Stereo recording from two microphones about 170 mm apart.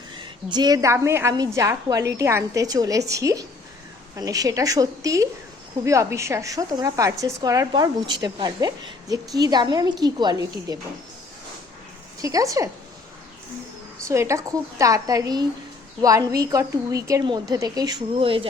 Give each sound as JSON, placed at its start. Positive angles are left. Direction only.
{"t": 0.5, "sound": "speech", "side_deg": -25}
{"t": 12.2, "sound": "speech", "side_deg": -20}
{"t": 14.1, "sound": "speech", "side_deg": -15}